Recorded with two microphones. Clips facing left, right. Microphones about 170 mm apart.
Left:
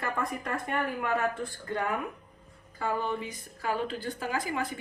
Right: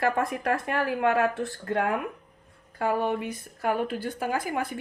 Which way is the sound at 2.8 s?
70° right (ahead or behind).